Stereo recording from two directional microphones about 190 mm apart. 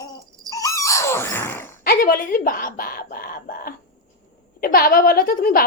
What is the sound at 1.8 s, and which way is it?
Speech, 50° left (ahead or behind).